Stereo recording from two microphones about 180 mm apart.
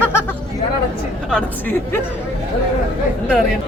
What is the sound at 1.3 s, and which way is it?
Speech, 10° left (ahead or behind).